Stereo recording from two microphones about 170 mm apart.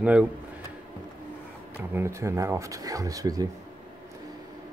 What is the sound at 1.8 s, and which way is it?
Speech, 15° right (ahead or behind).